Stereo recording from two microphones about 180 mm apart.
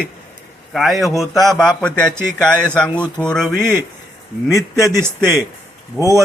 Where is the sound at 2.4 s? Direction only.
5° left (ahead or behind).